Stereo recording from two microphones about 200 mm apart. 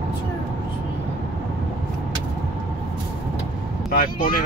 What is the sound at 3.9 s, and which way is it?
Speech, 45° left (ahead or behind).